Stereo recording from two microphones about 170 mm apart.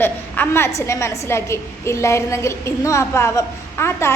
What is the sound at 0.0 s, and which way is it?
A woman's voice, 15° left (ahead or behind).